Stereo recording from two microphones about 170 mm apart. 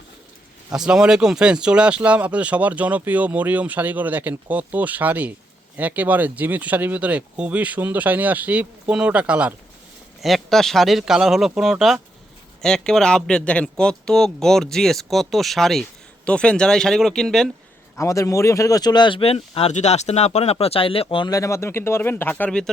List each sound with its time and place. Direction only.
0.7 s speech: 5° right (ahead or behind)
17.9 s speech: 15° left (ahead or behind)